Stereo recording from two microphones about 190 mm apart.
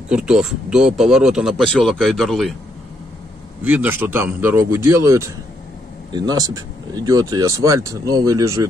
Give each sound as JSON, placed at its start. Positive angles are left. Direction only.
{"t": 0.1, "sound": "speech", "side_deg": -5}
{"t": 3.6, "sound": "a man's voice", "side_deg": -10}